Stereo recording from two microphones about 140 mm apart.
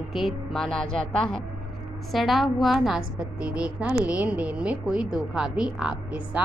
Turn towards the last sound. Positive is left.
turn(degrees=-5)  # may be behind; listen again after turning